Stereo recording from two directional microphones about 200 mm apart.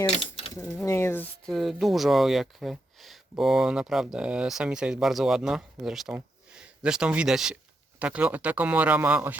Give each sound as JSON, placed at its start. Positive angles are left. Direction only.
{"t": 0.1, "sound": "mechanisms", "side_deg": 30}
{"t": 0.9, "sound": "speech", "side_deg": 15}